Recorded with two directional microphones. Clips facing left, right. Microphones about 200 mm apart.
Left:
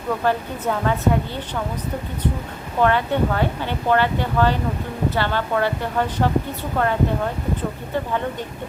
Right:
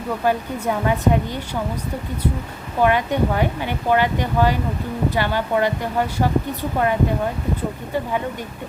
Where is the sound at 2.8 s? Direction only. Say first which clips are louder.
Right 1 dB; 15° right (ahead or behind).